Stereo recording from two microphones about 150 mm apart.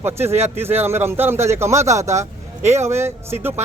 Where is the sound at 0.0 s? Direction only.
15° right (ahead or behind).